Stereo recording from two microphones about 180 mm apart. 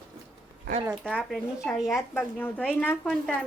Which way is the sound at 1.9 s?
10° left (ahead or behind).